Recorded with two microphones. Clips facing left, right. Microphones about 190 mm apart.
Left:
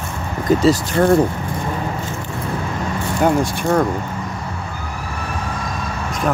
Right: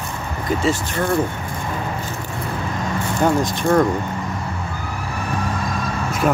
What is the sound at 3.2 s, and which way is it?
Speech, 10° left (ahead or behind).